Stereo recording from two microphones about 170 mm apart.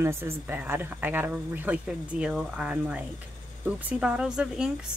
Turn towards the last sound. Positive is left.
turn(degrees=-5)  # may be behind; listen again after turning